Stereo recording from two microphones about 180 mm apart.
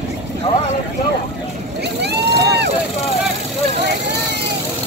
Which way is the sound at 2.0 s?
70° right (ahead or behind).